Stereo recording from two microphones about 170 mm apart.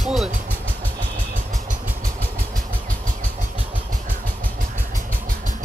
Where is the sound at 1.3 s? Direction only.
50° right (ahead or behind).